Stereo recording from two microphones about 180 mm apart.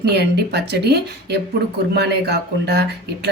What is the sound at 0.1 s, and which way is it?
A woman's voice, 65° right (ahead or behind).